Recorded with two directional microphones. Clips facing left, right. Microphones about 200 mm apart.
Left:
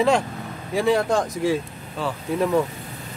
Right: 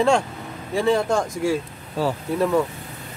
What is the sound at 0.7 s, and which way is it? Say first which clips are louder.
Speech: even; 5° left (ahead or behind).